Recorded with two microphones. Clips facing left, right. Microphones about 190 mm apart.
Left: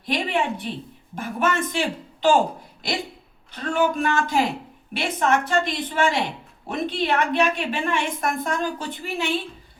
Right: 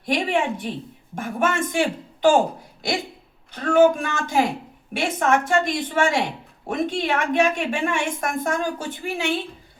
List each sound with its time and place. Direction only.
0.0 s a woman's voice: 45° right (ahead or behind)
3.7 s a woman's voice: 45° right (ahead or behind)